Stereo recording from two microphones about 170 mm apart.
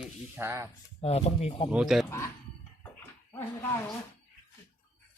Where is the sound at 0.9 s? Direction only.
35° left (ahead or behind).